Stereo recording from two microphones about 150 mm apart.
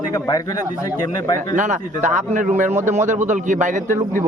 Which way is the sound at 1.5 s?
55° right (ahead or behind).